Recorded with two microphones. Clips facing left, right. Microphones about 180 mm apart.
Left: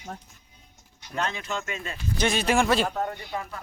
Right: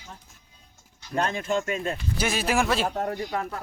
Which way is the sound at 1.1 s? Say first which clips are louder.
Right 5 dB; 50° right (ahead or behind).